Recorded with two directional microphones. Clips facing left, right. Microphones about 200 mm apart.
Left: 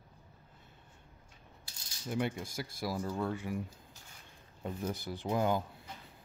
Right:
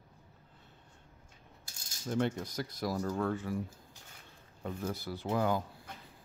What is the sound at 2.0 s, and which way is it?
Speech, 10° left (ahead or behind).